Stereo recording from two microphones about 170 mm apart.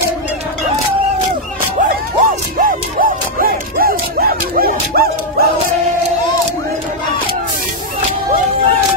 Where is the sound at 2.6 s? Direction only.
55° right (ahead or behind).